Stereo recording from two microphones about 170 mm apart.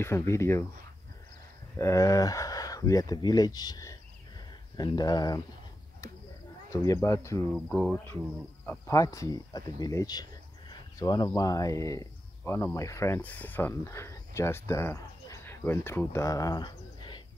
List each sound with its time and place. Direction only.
0.0 s speech: 15° left (ahead or behind)
1.8 s speech: 20° left (ahead or behind)
6.7 s speech: 20° left (ahead or behind)
7.5 s speech: 5° left (ahead or behind); by 17.2 s 25° left (ahead or behind)